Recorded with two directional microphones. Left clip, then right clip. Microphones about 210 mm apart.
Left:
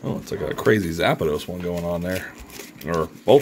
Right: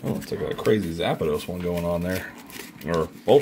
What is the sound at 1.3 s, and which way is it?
Speech, 10° left (ahead or behind).